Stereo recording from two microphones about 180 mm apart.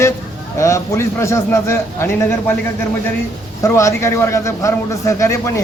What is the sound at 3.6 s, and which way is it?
A man's voice, 15° left (ahead or behind).